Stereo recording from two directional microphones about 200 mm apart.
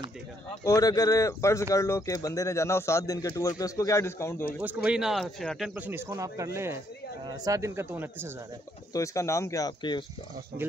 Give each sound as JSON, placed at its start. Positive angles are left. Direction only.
{"t": 0.7, "sound": "speech", "side_deg": 15}
{"t": 4.6, "sound": "speech", "side_deg": -10}
{"t": 5.8, "sound": "speech", "side_deg": -10}
{"t": 8.9, "sound": "speech", "side_deg": 15}